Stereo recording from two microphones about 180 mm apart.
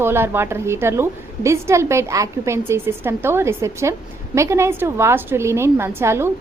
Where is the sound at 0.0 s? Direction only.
15° right (ahead or behind).